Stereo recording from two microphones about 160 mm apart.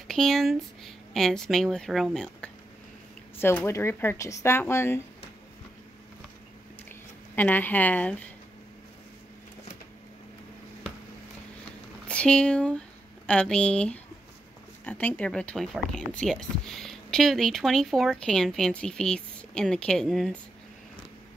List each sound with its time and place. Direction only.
0.1 s speech: centre (ahead or behind)
7.3 s speech: 10° left (ahead or behind)
12.1 s speech: 5° left (ahead or behind)